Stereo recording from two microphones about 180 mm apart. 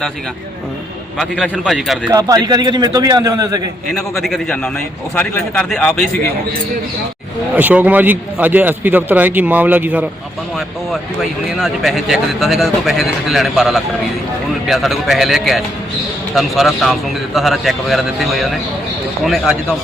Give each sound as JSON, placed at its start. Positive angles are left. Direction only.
{"t": 1.2, "sound": "speech", "side_deg": 0}
{"t": 2.0, "sound": "a man's voice", "side_deg": -20}
{"t": 4.2, "sound": "speech", "side_deg": 0}
{"t": 7.5, "sound": "a man's voice", "side_deg": -10}
{"t": 11.2, "sound": "speech", "side_deg": -5}